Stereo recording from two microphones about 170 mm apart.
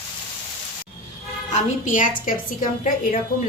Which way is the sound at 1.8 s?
50° left (ahead or behind).